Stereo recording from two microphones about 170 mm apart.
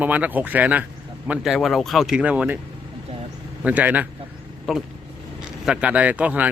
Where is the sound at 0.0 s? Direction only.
10° right (ahead or behind).